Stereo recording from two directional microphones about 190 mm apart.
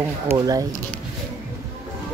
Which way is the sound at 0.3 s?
20° right (ahead or behind).